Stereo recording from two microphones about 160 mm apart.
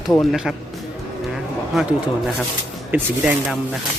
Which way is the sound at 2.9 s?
10° right (ahead or behind).